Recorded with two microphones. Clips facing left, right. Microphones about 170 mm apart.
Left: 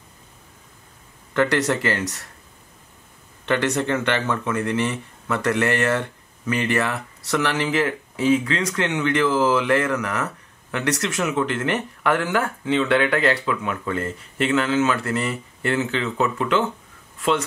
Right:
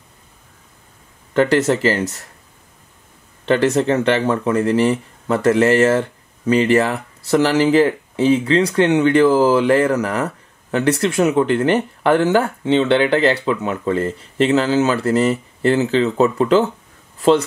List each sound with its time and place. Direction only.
1.3 s speech: 30° right (ahead or behind)
3.4 s speech: 30° right (ahead or behind)